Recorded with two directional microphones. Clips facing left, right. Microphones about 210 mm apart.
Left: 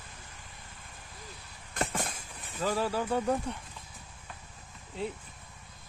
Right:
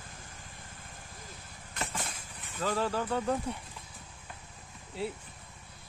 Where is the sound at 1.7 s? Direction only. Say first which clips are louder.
Left 5 dB; 50° left (ahead or behind).